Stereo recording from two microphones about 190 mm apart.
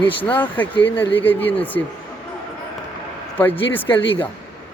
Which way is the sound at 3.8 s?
25° left (ahead or behind).